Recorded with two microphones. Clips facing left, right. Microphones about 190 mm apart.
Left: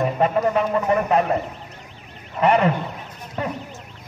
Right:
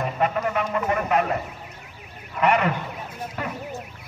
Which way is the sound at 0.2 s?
30° left (ahead or behind).